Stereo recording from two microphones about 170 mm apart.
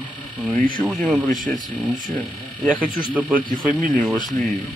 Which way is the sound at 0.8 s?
20° right (ahead or behind).